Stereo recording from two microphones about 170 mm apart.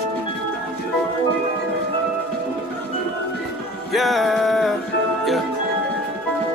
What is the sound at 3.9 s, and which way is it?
Music, centre (ahead or behind).